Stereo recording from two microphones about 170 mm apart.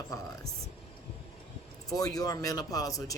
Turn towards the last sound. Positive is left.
turn(degrees=20)  # may be behind; listen again after turning